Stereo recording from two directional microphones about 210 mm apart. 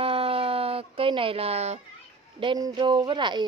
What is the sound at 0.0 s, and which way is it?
Dog, 25° right (ahead or behind).